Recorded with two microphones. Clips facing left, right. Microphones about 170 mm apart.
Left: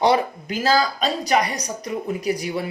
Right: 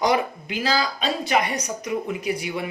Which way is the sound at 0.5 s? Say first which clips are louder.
Left 4 dB; 45° left (ahead or behind).